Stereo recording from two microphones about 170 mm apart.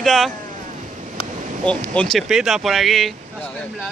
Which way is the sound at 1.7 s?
5° left (ahead or behind).